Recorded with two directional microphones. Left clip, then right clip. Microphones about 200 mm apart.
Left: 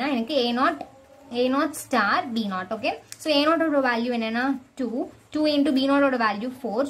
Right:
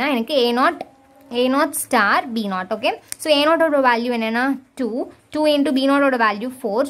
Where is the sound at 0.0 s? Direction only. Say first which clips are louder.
Right 6 dB; 35° right (ahead or behind).